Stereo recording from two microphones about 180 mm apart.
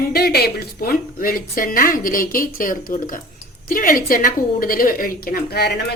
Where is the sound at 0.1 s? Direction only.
60° left (ahead or behind).